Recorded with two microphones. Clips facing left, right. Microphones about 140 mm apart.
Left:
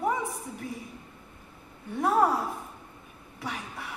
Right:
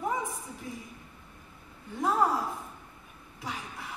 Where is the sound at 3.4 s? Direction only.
65° left (ahead or behind).